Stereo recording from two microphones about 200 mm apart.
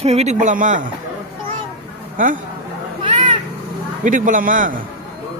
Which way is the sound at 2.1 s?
40° right (ahead or behind).